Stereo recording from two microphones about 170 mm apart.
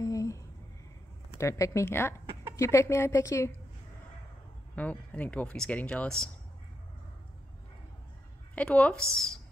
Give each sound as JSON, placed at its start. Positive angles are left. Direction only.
{"t": 0.0, "sound": "a sound", "side_deg": 20}
{"t": 1.4, "sound": "a woman's voice", "side_deg": 15}
{"t": 4.7, "sound": "a woman's voice", "side_deg": 10}
{"t": 8.5, "sound": "a woman's voice", "side_deg": 5}